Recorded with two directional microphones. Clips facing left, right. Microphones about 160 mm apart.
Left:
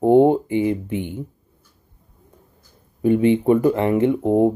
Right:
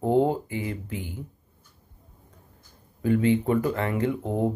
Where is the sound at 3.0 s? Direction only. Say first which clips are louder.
Left 6 dB; 25° left (ahead or behind).